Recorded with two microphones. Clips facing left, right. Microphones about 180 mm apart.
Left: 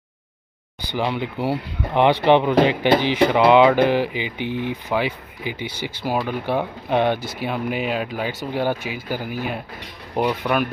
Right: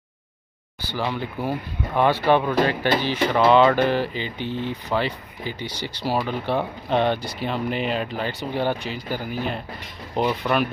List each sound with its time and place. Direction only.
0.8 s speech: 15° left (ahead or behind)